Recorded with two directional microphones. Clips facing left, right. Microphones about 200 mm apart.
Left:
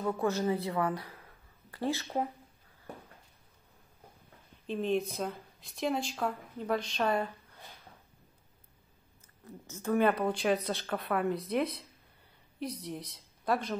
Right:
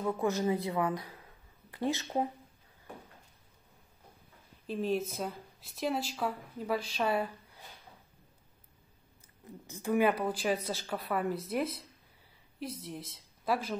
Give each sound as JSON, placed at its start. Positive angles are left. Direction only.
{"t": 0.0, "sound": "a woman's voice", "side_deg": -15}
{"t": 4.6, "sound": "speech", "side_deg": -5}
{"t": 9.7, "sound": "a woman's voice", "side_deg": -15}
{"t": 10.2, "sound": "a woman's voice", "side_deg": 0}